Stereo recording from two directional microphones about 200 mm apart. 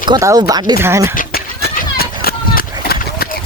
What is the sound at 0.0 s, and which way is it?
Speech, 20° right (ahead or behind).